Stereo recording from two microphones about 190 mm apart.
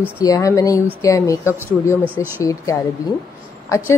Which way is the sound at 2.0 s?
10° right (ahead or behind).